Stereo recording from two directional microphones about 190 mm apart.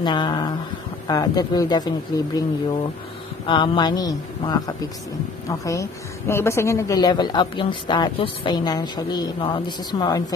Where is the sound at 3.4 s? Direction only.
25° left (ahead or behind).